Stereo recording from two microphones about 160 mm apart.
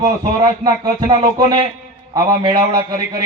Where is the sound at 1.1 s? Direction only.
25° right (ahead or behind).